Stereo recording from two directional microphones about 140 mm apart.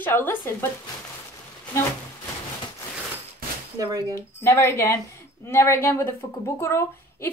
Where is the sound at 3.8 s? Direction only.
25° right (ahead or behind).